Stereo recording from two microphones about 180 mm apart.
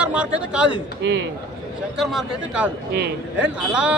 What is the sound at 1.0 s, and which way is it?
Speech, 80° right.